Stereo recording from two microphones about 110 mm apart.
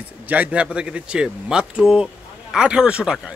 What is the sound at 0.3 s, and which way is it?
A man's voice, 10° right (ahead or behind).